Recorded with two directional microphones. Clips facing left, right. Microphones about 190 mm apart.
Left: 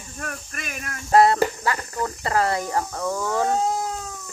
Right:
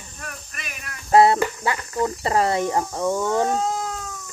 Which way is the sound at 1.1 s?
25° right (ahead or behind).